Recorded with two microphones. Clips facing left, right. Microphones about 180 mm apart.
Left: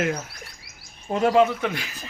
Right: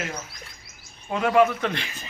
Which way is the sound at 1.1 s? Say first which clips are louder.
Left 3 dB; 35° left (ahead or behind).